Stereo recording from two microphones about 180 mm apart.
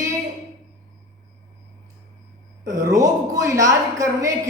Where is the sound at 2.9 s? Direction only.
20° right (ahead or behind).